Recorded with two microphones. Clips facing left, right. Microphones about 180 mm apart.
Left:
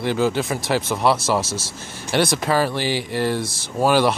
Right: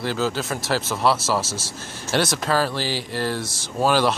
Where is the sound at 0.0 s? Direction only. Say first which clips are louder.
Left 4 dB; 15° left (ahead or behind).